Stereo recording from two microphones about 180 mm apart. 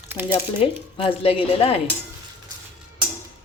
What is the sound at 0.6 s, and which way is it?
Speech, 30° left (ahead or behind).